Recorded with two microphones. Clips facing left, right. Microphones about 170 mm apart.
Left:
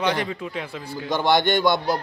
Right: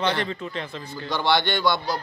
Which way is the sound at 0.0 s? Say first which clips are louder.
Left 1 dB; 10° left (ahead or behind).